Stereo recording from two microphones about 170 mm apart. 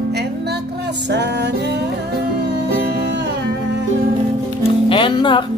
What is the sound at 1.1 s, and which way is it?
Music, 85° right.